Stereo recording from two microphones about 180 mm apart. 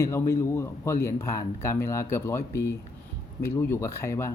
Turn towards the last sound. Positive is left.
turn(degrees=15)  # may be behind; listen again after turning